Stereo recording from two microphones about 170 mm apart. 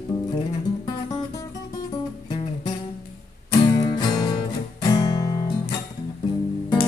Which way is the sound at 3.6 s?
25° left (ahead or behind).